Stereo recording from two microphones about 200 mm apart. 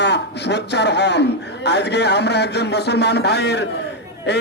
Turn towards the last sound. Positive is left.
turn(degrees=55)  # may be behind; listen again after turning